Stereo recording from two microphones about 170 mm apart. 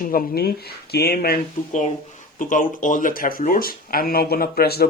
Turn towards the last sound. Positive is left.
turn(degrees=65)  # may be behind; listen again after turning